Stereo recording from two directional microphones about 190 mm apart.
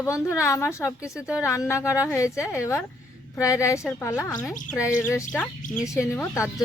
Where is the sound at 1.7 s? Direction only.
15° left (ahead or behind).